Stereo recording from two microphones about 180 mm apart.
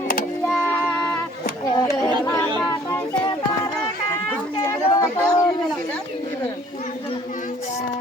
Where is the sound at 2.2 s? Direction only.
15° left (ahead or behind).